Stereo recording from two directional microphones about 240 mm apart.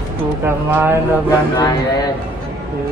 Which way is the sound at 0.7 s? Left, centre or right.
Centre.